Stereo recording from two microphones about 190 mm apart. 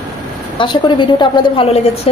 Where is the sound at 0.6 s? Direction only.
25° left (ahead or behind).